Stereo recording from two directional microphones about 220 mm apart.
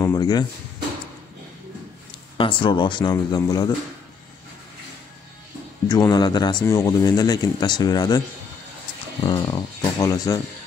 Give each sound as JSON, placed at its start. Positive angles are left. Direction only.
{"t": 0.0, "sound": "music", "side_deg": 15}
{"t": 2.3, "sound": "speech", "side_deg": 20}
{"t": 5.9, "sound": "speech", "side_deg": 15}
{"t": 9.2, "sound": "speech", "side_deg": 20}